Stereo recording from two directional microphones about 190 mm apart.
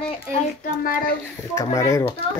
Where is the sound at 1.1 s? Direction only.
15° left (ahead or behind).